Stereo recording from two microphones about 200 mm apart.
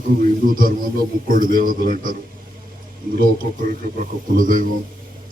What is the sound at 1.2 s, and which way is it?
A man's voice, 45° right (ahead or behind).